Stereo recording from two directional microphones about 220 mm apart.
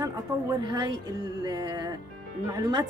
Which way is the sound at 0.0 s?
20° right (ahead or behind).